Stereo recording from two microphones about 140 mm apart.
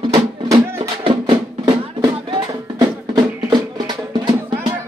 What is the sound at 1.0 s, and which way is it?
Music, 35° right (ahead or behind).